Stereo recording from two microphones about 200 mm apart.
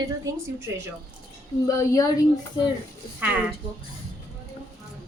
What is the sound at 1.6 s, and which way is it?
Speech, 15° left (ahead or behind).